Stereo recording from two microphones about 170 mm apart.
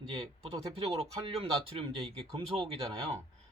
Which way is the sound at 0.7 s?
35° right (ahead or behind).